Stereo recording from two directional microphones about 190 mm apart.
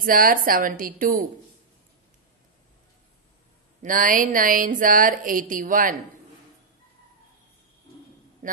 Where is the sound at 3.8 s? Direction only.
45° right (ahead or behind).